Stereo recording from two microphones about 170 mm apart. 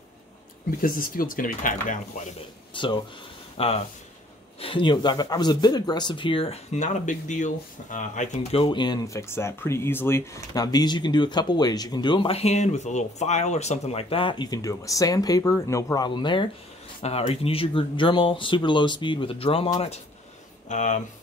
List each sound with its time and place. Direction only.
0.7 s speech: 55° left (ahead or behind)
2.7 s speech: 30° left (ahead or behind)
20.6 s speech: 45° left (ahead or behind)